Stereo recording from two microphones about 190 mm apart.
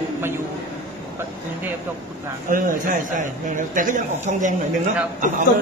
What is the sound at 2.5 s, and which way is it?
A man's voice, 45° right (ahead or behind).